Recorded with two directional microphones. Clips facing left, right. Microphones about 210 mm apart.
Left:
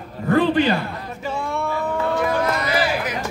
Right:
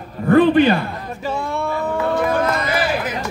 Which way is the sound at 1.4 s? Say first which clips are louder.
Right 1 dB; 35° right (ahead or behind).